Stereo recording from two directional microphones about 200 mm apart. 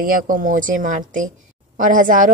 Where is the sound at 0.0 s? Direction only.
45° right (ahead or behind).